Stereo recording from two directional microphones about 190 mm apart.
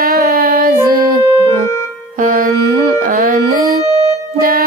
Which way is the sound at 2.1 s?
45° right (ahead or behind).